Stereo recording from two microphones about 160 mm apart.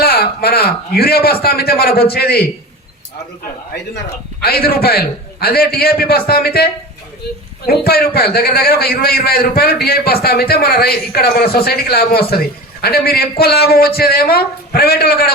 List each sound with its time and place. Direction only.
0.0 s a man's voice: 75° left (ahead or behind)
4.4 s a man's voice: 70° left (ahead or behind)
7.7 s a man's voice: 75° left (ahead or behind)